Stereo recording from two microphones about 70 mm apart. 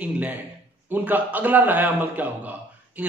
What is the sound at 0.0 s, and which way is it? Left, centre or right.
A man's voice, right.